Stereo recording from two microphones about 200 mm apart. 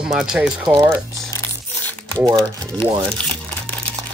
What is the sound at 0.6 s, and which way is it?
Speech, 15° right (ahead or behind).